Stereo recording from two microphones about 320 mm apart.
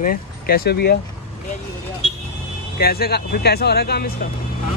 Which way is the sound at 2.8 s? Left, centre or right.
Left.